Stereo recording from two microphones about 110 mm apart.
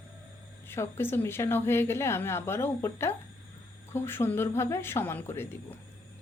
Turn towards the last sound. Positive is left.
turn(degrees=20)  # may be behind; listen again after turning